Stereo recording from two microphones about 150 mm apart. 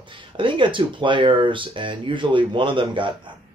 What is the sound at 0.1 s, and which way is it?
Speech, 35° right (ahead or behind).